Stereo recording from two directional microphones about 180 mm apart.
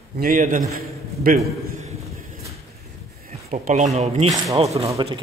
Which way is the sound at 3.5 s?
40° right (ahead or behind).